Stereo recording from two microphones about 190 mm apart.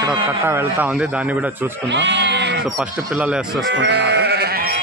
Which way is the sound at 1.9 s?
65° right (ahead or behind).